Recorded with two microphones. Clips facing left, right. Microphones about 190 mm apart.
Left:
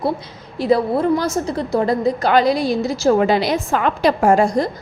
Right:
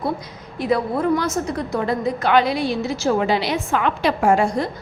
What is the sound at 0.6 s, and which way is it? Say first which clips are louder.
A woman's voice: left 4 dB; 30° left (ahead or behind).